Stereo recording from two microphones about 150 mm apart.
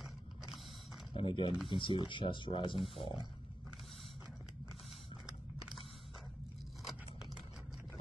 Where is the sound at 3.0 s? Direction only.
35° left (ahead or behind).